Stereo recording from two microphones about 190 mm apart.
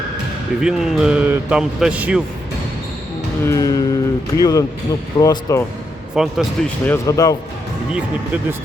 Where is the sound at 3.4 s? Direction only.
15° left (ahead or behind).